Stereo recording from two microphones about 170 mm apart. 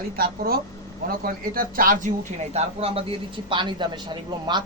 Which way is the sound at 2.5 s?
35° right (ahead or behind).